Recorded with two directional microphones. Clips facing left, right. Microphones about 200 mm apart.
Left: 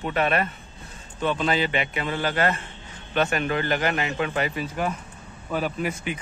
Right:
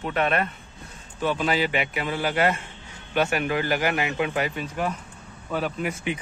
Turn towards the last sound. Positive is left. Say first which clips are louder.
# left 1 dB
turn(degrees=5)  # may be behind; listen again after turning